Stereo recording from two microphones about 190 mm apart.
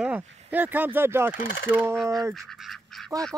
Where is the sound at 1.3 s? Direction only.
50° left (ahead or behind).